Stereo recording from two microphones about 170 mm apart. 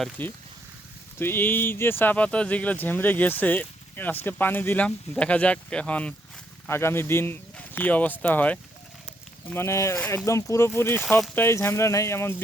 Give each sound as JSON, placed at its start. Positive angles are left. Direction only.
{"t": 0.0, "sound": "speech", "side_deg": 10}